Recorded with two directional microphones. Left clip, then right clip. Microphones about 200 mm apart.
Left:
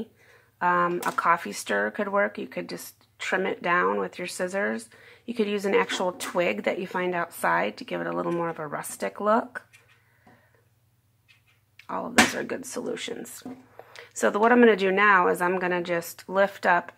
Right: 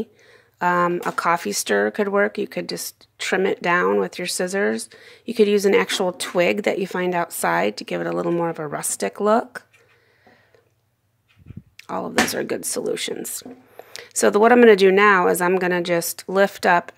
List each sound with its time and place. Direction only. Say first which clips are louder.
0.6 s speech: right 4 dB; 40° right (ahead or behind)
11.7 s speech: right 1 dB; 40° right (ahead or behind)